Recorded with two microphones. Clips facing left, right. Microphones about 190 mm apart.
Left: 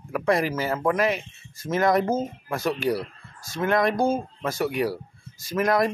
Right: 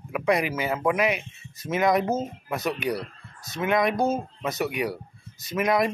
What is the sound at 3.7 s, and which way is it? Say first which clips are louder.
Speech: left 1 dB; 20° right (ahead or behind).